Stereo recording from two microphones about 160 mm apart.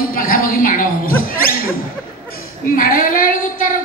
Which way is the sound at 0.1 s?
60° left (ahead or behind).